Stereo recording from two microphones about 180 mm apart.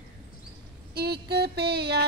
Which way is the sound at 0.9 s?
65° right (ahead or behind).